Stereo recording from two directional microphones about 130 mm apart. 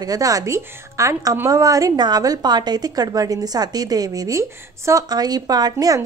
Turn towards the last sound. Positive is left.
turn(degrees=-30)  # may be behind; listen again after turning